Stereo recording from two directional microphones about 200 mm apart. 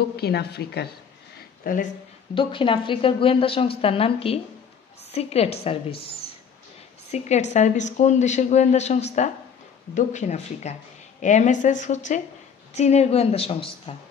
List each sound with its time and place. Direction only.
0.1 s a woman's voice: 55° left (ahead or behind)
1.6 s speech: 45° left (ahead or behind)
2.3 s speech: 25° left (ahead or behind)
7.1 s speech: 35° left (ahead or behind)